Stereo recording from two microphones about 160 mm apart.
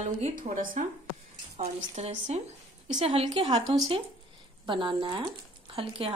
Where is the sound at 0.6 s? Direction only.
60° right (ahead or behind).